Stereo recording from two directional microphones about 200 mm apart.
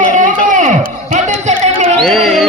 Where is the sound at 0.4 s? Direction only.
40° right (ahead or behind).